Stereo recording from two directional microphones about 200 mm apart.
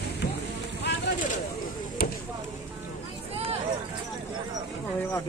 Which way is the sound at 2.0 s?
50° left (ahead or behind).